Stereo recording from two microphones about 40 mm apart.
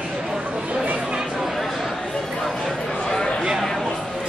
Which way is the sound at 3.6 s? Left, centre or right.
Centre.